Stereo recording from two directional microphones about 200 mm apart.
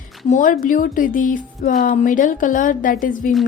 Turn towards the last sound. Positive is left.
turn(degrees=40)  # may be behind; listen again after turning